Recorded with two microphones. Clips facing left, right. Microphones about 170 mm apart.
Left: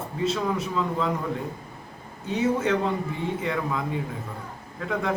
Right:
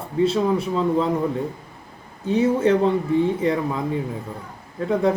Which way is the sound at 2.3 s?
30° right (ahead or behind).